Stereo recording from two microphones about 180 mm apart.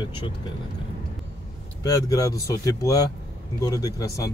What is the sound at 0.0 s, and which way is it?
Speech, 25° left (ahead or behind).